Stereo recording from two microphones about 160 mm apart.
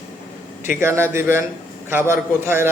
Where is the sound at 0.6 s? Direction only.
15° right (ahead or behind).